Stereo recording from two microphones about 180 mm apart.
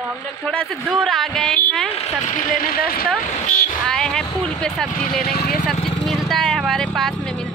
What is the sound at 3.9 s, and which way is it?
A woman's voice, 5° left (ahead or behind).